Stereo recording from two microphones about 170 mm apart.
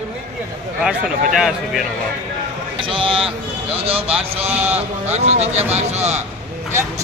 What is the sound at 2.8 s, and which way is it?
Speech, 30° right (ahead or behind).